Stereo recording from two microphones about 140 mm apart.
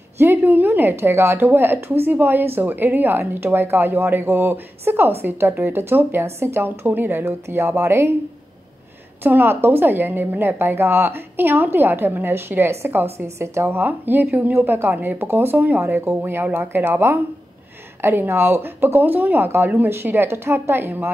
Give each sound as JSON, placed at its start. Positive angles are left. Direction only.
{"t": 0.2, "sound": "a woman's voice", "side_deg": -15}
{"t": 9.2, "sound": "a woman's voice", "side_deg": -15}